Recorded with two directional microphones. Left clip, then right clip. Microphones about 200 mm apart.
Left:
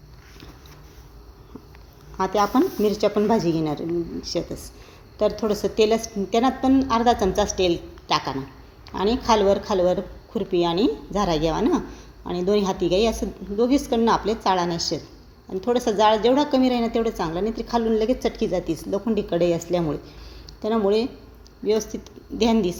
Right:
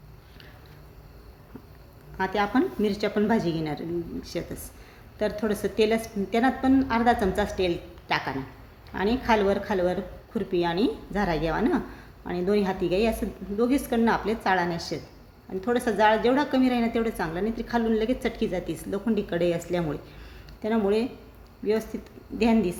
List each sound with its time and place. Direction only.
2.1 s a woman's voice: 5° left (ahead or behind)